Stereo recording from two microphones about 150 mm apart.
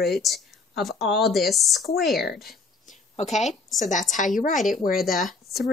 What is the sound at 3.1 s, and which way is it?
A woman's voice, 50° left (ahead or behind).